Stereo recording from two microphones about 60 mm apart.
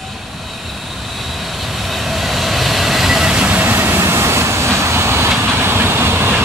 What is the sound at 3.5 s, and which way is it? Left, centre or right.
Vehicle, right.